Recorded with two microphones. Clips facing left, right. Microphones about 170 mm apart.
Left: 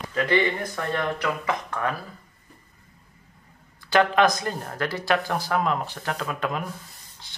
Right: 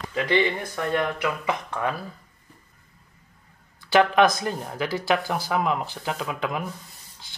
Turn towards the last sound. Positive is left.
turn(degrees=-10)  # may be behind; listen again after turning